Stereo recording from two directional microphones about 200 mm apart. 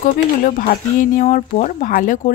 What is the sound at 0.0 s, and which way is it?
A woman's voice, 45° left (ahead or behind).